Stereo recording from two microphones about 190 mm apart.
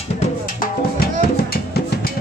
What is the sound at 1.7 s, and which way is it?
Music, 55° left (ahead or behind).